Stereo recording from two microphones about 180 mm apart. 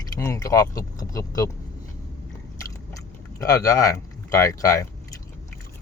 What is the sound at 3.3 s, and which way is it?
Speech, 20° left (ahead or behind).